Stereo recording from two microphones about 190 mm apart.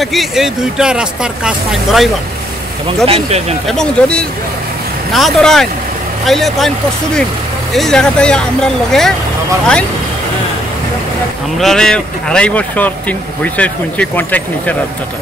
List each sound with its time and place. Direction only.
0.0 s speech: centre (ahead or behind)
3.1 s speech: 35° right (ahead or behind)
3.6 s speech: 5° left (ahead or behind)
7.7 s speech: centre (ahead or behind)
11.5 s speech: centre (ahead or behind)